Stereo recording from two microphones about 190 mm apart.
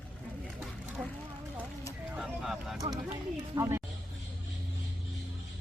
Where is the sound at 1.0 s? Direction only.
Centre (ahead or behind).